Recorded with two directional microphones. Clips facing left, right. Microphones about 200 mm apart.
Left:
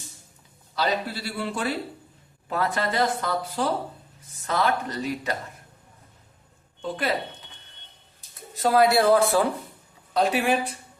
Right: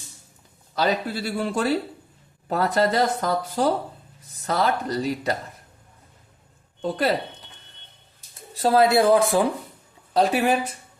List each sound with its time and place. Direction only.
0.8 s a man's voice: 45° right (ahead or behind)
6.8 s speech: 40° right (ahead or behind)
8.6 s speech: 25° right (ahead or behind)
10.2 s speech: 40° right (ahead or behind)